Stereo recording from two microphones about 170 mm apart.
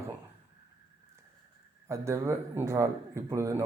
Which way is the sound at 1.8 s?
15° right (ahead or behind).